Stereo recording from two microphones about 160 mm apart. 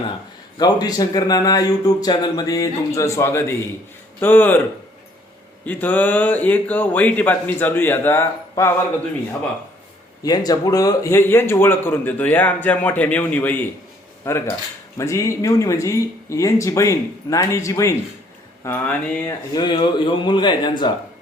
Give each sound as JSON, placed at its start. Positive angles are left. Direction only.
{"t": 0.6, "sound": "a man's voice", "side_deg": 25}
{"t": 5.6, "sound": "a man's voice", "side_deg": 10}
{"t": 10.2, "sound": "a man's voice", "side_deg": 25}
{"t": 19.2, "sound": "speech", "side_deg": 30}